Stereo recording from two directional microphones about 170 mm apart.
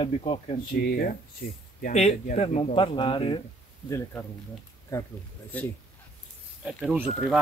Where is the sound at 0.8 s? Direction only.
60° left (ahead or behind).